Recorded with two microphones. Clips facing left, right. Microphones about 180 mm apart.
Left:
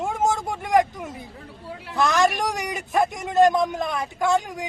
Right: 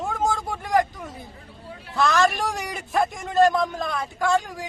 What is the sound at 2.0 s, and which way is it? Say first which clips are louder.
A man's voice: even; 20° left (ahead or behind).